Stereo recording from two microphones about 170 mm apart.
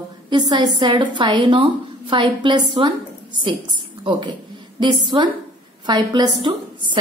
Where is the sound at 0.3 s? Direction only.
25° right (ahead or behind).